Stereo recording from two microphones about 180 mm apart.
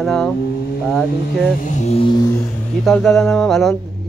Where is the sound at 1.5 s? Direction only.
45° left (ahead or behind); by 2.6 s 20° left (ahead or behind).